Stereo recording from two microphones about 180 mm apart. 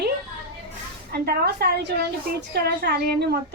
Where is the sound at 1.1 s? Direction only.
60° right (ahead or behind).